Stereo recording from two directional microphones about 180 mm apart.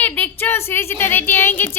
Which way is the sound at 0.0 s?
10° left (ahead or behind).